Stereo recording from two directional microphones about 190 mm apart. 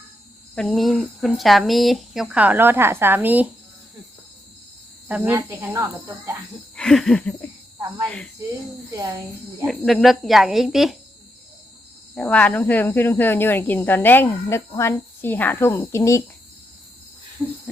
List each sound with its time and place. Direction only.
0.5 s speech: 5° left (ahead or behind)
5.0 s speech: 10° right (ahead or behind)
6.7 s a sound: centre (ahead or behind)
9.0 s speech: 15° right (ahead or behind)
9.6 s speech: centre (ahead or behind)
12.1 s speech: 5° left (ahead or behind)
17.4 s speech: 15° right (ahead or behind)